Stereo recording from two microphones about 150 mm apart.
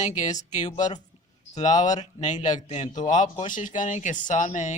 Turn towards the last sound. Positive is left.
turn(degrees=55)  # may be behind; listen again after turning